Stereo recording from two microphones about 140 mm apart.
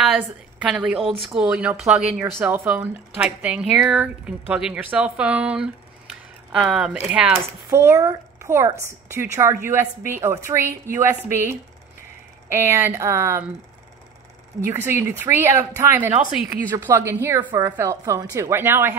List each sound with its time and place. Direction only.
0.0 s a woman's voice: 5° right (ahead or behind)
14.7 s a woman's voice: 20° right (ahead or behind)